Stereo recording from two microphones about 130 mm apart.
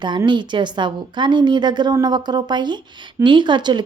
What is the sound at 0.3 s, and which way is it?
Speech, 35° right (ahead or behind).